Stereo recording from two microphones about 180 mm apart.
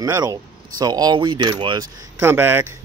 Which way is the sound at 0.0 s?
20° right (ahead or behind).